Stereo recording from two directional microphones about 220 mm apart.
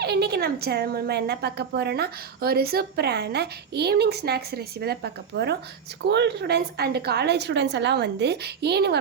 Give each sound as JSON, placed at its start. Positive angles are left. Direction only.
{"t": 0.0, "sound": "a woman's voice", "side_deg": -45}